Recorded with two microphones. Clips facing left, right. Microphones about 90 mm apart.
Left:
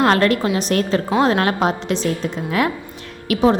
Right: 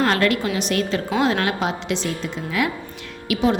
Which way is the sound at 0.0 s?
40° left (ahead or behind).